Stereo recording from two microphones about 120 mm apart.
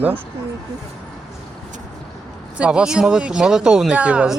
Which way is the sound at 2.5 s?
10° right (ahead or behind).